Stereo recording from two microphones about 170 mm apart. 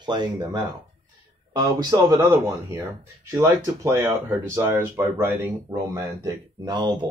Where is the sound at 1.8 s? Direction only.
20° right (ahead or behind).